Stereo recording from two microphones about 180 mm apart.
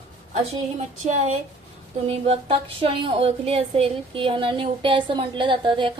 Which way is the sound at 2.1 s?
35° right (ahead or behind).